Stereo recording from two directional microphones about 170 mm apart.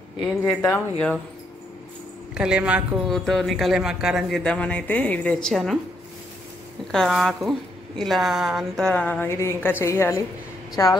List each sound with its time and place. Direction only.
0.2 s a woman's voice: 10° left (ahead or behind)
2.3 s speech: 5° right (ahead or behind)
6.9 s a woman's voice: centre (ahead or behind); by 10.9 s 20° left (ahead or behind)